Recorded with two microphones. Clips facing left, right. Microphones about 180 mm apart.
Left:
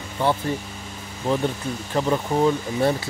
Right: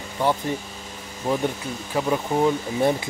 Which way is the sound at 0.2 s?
15° right (ahead or behind).